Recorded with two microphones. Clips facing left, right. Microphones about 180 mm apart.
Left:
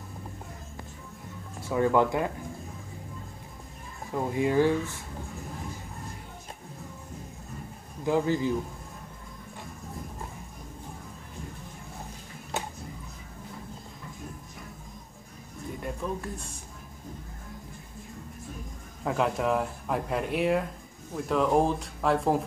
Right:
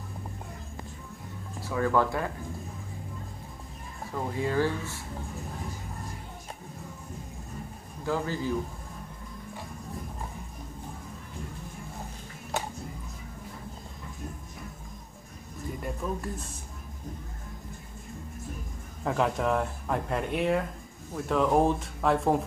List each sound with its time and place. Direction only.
1.7 s speech: 20° left (ahead or behind)
4.1 s speech: 15° left (ahead or behind)
8.0 s speech: 20° left (ahead or behind)
15.8 s speech: centre (ahead or behind)
19.0 s speech: centre (ahead or behind)